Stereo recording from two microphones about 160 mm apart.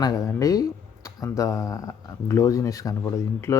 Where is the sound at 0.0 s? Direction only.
25° left (ahead or behind).